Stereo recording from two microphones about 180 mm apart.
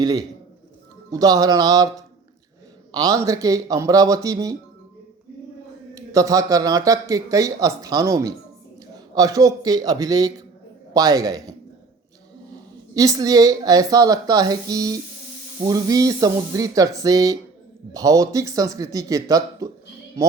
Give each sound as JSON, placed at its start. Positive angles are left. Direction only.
{"t": 0.0, "sound": "speech", "side_deg": -20}
{"t": 5.9, "sound": "speech", "side_deg": -20}
{"t": 12.9, "sound": "speech", "side_deg": -20}